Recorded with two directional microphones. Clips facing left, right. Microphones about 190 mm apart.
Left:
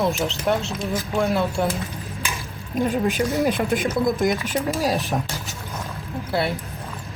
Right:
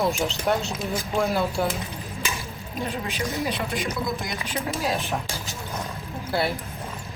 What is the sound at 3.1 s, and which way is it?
Speech, 50° left (ahead or behind).